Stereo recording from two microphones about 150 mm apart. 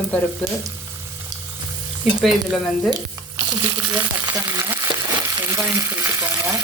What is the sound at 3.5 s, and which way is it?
Frying, 25° right (ahead or behind).